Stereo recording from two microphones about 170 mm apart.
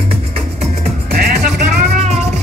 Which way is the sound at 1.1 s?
65° right (ahead or behind).